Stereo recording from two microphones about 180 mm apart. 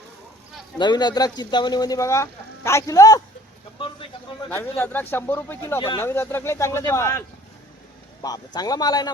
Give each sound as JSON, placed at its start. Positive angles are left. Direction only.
{"t": 0.8, "sound": "speech", "side_deg": 25}
{"t": 3.8, "sound": "a sound", "side_deg": 30}
{"t": 4.4, "sound": "speech", "side_deg": 10}